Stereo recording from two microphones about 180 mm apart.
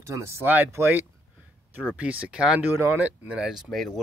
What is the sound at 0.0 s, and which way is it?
Speech, 15° right (ahead or behind).